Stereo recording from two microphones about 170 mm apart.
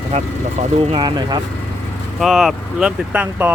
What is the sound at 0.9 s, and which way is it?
Speech, 25° right (ahead or behind).